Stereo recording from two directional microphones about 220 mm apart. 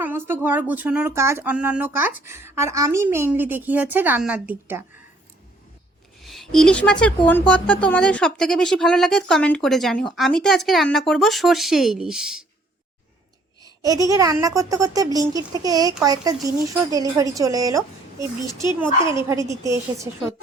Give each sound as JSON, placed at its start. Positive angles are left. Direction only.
{"t": 0.0, "sound": "speech", "side_deg": -10}
{"t": 6.2, "sound": "speech", "side_deg": 0}
{"t": 13.6, "sound": "speech", "side_deg": -15}